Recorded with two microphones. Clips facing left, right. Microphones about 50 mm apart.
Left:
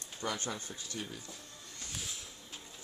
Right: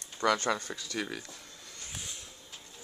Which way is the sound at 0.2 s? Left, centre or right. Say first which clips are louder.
Right 10 dB; right.